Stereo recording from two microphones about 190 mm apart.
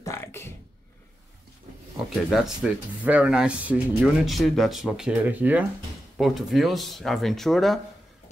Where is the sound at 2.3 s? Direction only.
Centre (ahead or behind).